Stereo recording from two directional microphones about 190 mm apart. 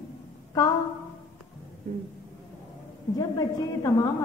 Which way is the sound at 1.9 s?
40° right (ahead or behind).